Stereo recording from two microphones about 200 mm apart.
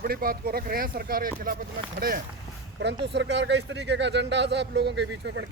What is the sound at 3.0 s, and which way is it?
Speech, 60° right (ahead or behind).